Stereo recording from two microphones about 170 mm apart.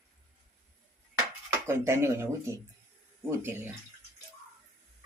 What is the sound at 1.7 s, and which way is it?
Speech, 15° right (ahead or behind).